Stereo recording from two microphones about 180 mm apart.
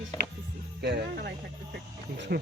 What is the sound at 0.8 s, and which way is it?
Music, 65° right (ahead or behind).